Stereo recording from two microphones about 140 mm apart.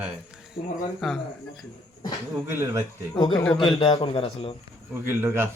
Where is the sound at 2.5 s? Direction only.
15° right (ahead or behind).